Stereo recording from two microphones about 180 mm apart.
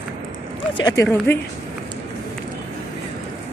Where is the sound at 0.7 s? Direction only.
20° left (ahead or behind).